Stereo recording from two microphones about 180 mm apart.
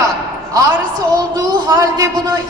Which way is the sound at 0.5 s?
20° right (ahead or behind).